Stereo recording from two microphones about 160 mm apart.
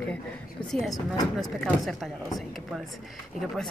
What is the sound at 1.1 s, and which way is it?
Speech, 25° left (ahead or behind).